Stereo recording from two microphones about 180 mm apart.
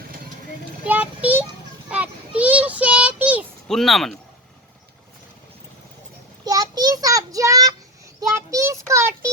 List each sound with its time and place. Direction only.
0.9 s a child's voice: 10° right (ahead or behind)
1.9 s child singing: 5° right (ahead or behind)
3.7 s speech: centre (ahead or behind)
6.4 s child singing: 20° right (ahead or behind)